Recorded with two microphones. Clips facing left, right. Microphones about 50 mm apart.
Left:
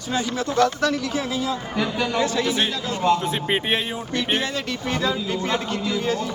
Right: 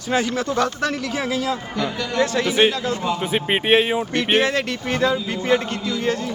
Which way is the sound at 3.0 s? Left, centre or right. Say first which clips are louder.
Left 4 dB; centre.